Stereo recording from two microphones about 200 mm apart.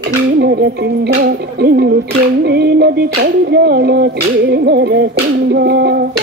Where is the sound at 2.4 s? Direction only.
55° right (ahead or behind).